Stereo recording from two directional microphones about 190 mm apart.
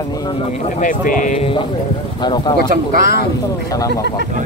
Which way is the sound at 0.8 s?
45° left (ahead or behind).